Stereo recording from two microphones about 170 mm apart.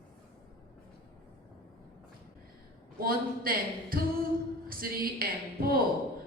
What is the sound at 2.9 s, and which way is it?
A woman's voice, 60° right (ahead or behind).